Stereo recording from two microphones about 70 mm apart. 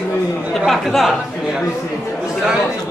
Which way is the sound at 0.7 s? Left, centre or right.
Centre.